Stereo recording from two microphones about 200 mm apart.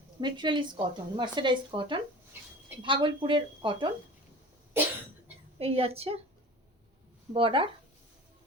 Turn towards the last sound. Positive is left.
turn(degrees=-25)  # may be behind; listen again after turning